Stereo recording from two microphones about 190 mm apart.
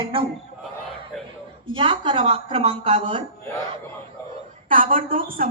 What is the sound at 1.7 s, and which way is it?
A woman's voice, 25° right (ahead or behind).